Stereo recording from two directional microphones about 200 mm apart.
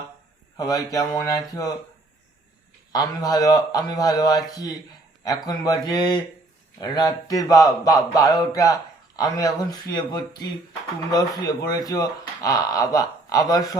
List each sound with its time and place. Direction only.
0.5 s speech: 20° left (ahead or behind)
2.9 s a man's voice: 20° left (ahead or behind)